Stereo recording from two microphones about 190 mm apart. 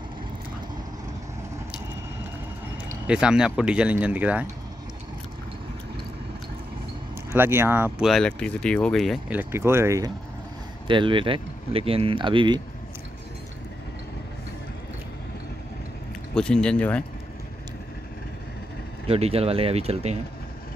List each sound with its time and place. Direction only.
3.1 s speech: 5° right (ahead or behind)
7.3 s speech: 10° right (ahead or behind)
8.1 s speech: 5° left (ahead or behind); by 12.5 s 25° right (ahead or behind)
16.3 s speech: 5° left (ahead or behind)
19.0 s speech: 30° right (ahead or behind)